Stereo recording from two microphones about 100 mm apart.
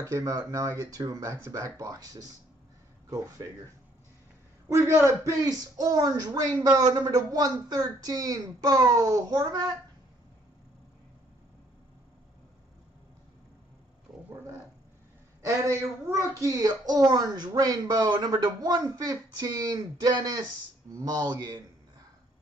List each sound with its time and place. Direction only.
0.0 s speech: 35° right (ahead or behind)
4.6 s speech: 30° right (ahead or behind); by 9.8 s 45° right (ahead or behind)
16.3 s speech: 35° right (ahead or behind)